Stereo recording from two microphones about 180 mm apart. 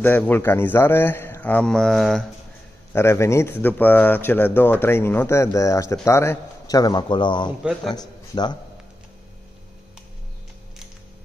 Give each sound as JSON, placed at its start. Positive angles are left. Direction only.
{"t": 0.0, "sound": "speech", "side_deg": 10}
{"t": 2.9, "sound": "a man's voice", "side_deg": 15}